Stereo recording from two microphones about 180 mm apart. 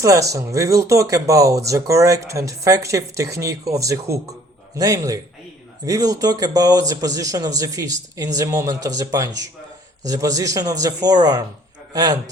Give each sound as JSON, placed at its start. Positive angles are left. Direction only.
{"t": 0.0, "sound": "speech", "side_deg": -20}